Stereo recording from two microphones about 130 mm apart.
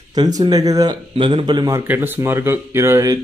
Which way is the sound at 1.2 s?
40° right (ahead or behind).